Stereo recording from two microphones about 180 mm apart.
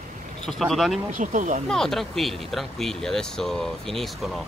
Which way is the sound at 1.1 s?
45° right (ahead or behind).